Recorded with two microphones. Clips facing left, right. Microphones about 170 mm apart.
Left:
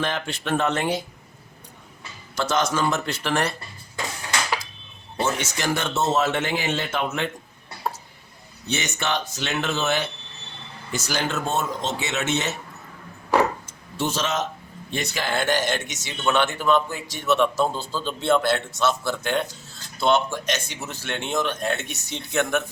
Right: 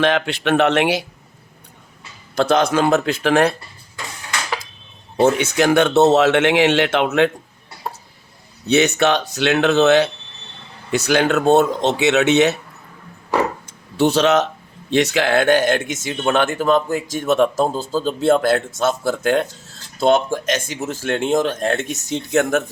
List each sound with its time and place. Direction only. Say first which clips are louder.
0.0 s speech: right 9 dB; 70° right (ahead or behind)
2.3 s speech: right 7 dB; 60° right (ahead or behind)
5.1 s speech: right 10 dB; 65° right (ahead or behind); by 7.3 s 80° right
8.7 s speech: right 11 dB; 65° right (ahead or behind)
13.9 s speech: right 11 dB; 65° right (ahead or behind)
14.8 s speech: right 11 dB; 80° right; by 22.6 s 45° right (ahead or behind)